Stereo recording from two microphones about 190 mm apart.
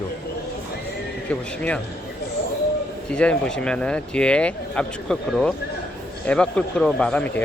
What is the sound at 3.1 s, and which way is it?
Speech, 5° left (ahead or behind).